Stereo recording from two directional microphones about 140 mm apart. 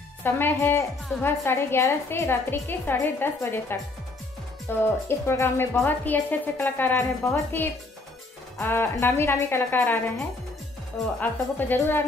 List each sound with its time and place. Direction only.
0.2 s a woman's voice: 15° left (ahead or behind)
11.1 s a woman's voice: 15° left (ahead or behind)